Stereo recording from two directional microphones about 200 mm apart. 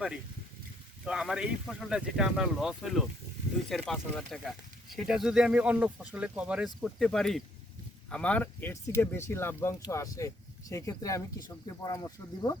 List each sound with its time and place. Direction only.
1.0 s speech: 5° right (ahead or behind); by 12.5 s 15° left (ahead or behind)